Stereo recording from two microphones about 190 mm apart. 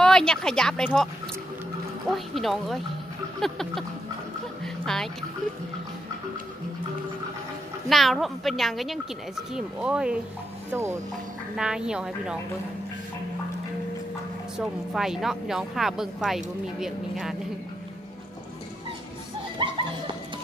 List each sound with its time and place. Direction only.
0.0 s speech: 5° left (ahead or behind)
2.0 s speech: centre (ahead or behind)
4.8 s speech: centre (ahead or behind)
7.9 s speech: centre (ahead or behind)
11.5 s speech: 5° right (ahead or behind)
15.0 s speech: centre (ahead or behind)
19.6 s speech: 25° right (ahead or behind)